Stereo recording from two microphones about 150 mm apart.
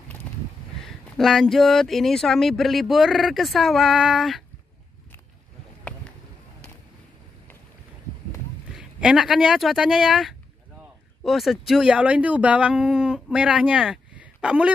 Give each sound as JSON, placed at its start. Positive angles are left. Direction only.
{"t": 0.8, "sound": "speech", "side_deg": 0}
{"t": 8.7, "sound": "speech", "side_deg": -5}